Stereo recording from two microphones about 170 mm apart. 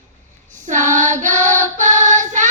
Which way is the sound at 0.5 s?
45° right (ahead or behind).